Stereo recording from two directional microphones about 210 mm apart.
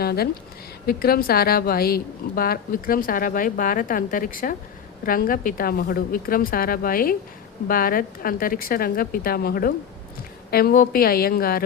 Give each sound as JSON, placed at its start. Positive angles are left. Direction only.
{"t": 0.0, "sound": "a woman's voice", "side_deg": 50}